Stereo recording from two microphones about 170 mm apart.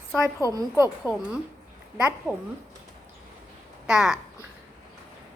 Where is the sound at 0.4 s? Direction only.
20° right (ahead or behind).